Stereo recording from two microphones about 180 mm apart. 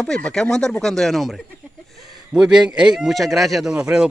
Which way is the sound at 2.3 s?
5° right (ahead or behind).